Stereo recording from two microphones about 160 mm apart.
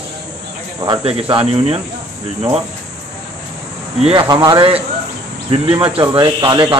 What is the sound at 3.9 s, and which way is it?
Speech, 40° right (ahead or behind).